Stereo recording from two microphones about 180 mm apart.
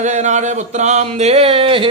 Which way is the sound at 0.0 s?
40° right (ahead or behind).